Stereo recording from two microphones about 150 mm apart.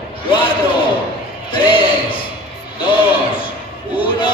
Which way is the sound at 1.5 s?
35° left (ahead or behind).